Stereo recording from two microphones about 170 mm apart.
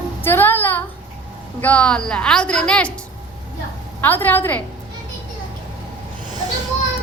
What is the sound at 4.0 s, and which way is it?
Speech, 10° left (ahead or behind).